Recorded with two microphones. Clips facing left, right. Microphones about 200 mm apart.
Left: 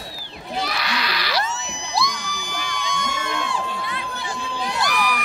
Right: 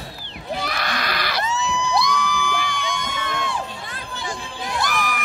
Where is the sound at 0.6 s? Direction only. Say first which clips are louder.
Left 2 dB; 50° right (ahead or behind).